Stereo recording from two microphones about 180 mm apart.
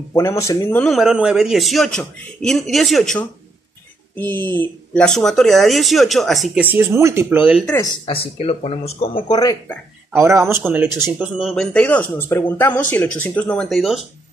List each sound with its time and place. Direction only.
0.1 s speech: 15° left (ahead or behind); by 7.6 s 10° right (ahead or behind)
7.8 s speech: 25° left (ahead or behind)
10.1 s speech: 15° right (ahead or behind)